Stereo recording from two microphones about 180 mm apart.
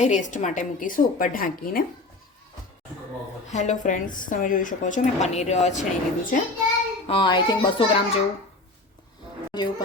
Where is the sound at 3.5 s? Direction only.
40° left (ahead or behind).